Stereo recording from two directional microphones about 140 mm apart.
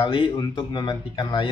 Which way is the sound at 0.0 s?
35° left (ahead or behind).